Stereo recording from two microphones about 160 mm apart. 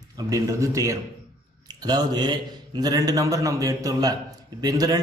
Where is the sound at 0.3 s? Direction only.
20° right (ahead or behind).